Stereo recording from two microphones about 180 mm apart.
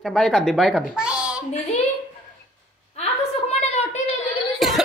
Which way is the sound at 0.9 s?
5° right (ahead or behind).